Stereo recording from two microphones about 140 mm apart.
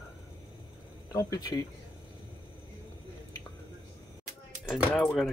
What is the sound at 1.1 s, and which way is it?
Speech, 25° left (ahead or behind).